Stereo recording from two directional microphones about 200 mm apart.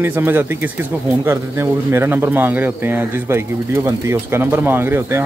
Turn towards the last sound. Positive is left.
turn(degrees=-10)  # may be behind; listen again after turning